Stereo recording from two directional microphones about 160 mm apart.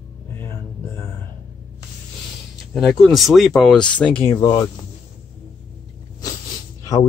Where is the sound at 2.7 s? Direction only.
5° left (ahead or behind).